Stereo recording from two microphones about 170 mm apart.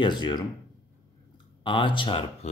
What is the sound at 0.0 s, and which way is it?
Speech, 25° left (ahead or behind).